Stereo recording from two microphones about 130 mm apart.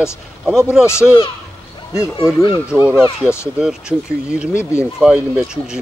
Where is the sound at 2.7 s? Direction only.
5° right (ahead or behind).